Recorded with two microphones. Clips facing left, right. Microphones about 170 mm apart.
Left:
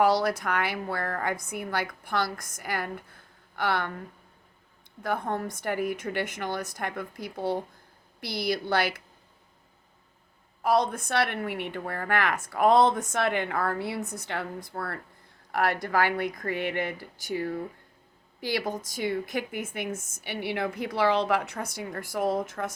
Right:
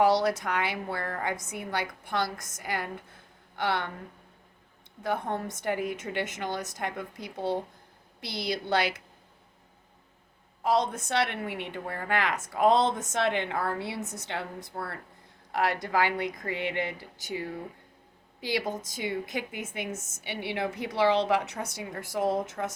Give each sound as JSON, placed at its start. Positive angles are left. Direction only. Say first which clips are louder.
{"t": 0.0, "sound": "speech", "louder": "even", "side_deg": -25}
{"t": 5.0, "sound": "speech", "louder": "left 1 dB", "side_deg": -25}
{"t": 10.6, "sound": "speech", "louder": "left 2 dB", "side_deg": -20}
{"t": 15.5, "sound": "a woman's voice", "louder": "left 1 dB", "side_deg": 55}
{"t": 15.8, "sound": "speech", "louder": "left 1 dB", "side_deg": -20}
{"t": 18.4, "sound": "speech", "louder": "left 1 dB", "side_deg": -20}
{"t": 21.4, "sound": "a woman's voice", "louder": "left 1 dB", "side_deg": 55}
{"t": 21.9, "sound": "speech", "louder": "even", "side_deg": -25}